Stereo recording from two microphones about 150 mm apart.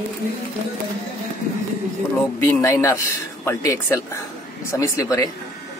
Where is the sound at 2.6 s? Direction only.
20° left (ahead or behind).